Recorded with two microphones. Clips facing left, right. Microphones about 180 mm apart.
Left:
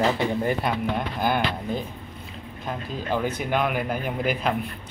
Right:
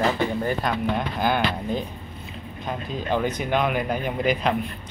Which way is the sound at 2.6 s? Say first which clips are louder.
Right 2 dB; 5° left (ahead or behind).